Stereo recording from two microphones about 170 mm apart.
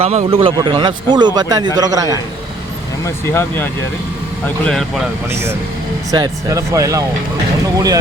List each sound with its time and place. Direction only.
0.0 s a man's voice: 40° right (ahead or behind); by 2.2 s 20° right (ahead or behind)
3.0 s speech: 15° left (ahead or behind)
5.3 s a man's voice: 15° right (ahead or behind)